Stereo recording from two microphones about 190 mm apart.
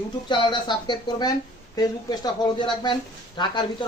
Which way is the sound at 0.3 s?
25° left (ahead or behind).